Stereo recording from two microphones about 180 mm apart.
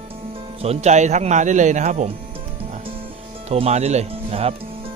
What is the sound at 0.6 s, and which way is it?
Speech, 35° right (ahead or behind).